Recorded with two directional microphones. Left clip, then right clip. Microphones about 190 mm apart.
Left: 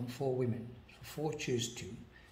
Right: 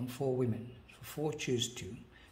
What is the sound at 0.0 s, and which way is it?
A man's voice, 35° right (ahead or behind).